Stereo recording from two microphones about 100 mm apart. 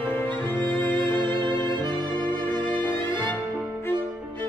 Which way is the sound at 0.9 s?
50° right (ahead or behind).